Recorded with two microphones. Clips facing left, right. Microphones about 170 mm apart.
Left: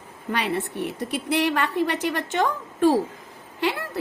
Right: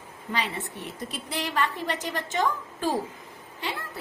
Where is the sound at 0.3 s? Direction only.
65° left (ahead or behind).